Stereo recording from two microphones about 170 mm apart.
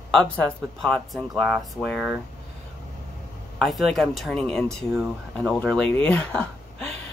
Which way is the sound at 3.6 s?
Centre (ahead or behind).